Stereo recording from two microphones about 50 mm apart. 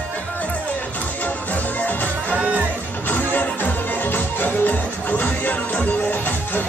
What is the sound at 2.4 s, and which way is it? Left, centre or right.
Music, right.